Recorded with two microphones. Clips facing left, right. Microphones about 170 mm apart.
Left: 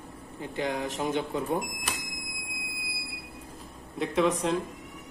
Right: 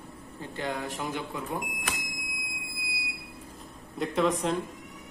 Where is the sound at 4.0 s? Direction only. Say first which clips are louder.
Left 1 dB; centre (ahead or behind).